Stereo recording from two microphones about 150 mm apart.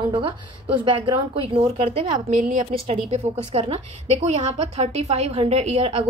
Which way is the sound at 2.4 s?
60° right (ahead or behind).